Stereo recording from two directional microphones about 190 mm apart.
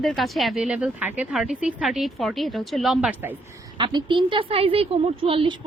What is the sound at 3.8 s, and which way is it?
A woman's voice, 25° right (ahead or behind).